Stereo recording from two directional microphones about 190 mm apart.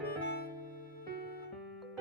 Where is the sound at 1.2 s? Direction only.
50° left (ahead or behind).